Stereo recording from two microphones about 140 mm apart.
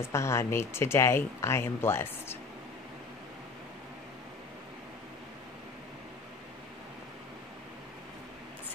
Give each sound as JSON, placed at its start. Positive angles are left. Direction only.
{"t": 0.0, "sound": "speech", "side_deg": 20}